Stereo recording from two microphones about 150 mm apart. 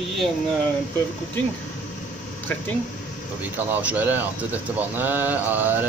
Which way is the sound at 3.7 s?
10° right (ahead or behind).